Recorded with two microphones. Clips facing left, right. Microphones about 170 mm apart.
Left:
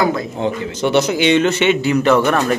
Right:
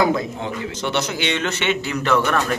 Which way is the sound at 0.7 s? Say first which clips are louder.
Left 9 dB; 10° left (ahead or behind).